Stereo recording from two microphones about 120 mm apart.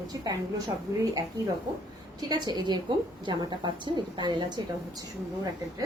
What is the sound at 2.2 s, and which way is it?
A woman's voice, 35° right (ahead or behind).